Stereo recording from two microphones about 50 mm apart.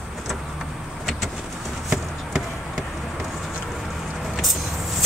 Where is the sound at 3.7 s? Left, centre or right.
Centre.